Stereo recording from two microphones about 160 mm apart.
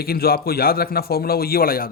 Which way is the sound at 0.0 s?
70° left (ahead or behind).